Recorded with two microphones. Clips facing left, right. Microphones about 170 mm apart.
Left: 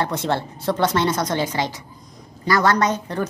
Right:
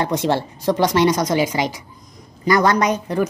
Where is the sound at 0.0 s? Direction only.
15° right (ahead or behind).